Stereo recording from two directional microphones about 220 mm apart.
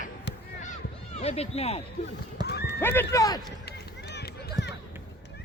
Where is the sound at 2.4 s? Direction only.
50° left (ahead or behind).